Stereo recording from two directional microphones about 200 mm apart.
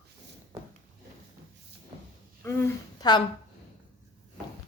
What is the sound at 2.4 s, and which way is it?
Speech, 20° left (ahead or behind).